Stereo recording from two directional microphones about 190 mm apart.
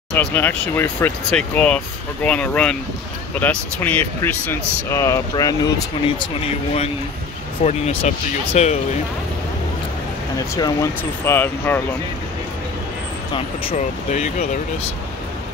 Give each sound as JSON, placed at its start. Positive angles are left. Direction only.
{"t": 0.1, "sound": "speech", "side_deg": 10}
{"t": 7.6, "sound": "speech", "side_deg": 30}
{"t": 10.5, "sound": "speech", "side_deg": 15}
{"t": 13.7, "sound": "speech", "side_deg": 40}